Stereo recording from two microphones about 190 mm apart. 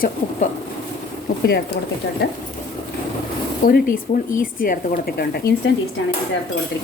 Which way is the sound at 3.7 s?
50° left (ahead or behind).